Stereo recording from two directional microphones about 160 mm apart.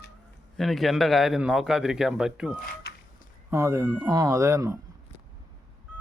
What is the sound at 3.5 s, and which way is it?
Speech, 15° right (ahead or behind).